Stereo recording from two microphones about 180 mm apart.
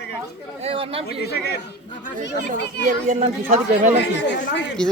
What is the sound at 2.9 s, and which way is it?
Speech, 40° right (ahead or behind).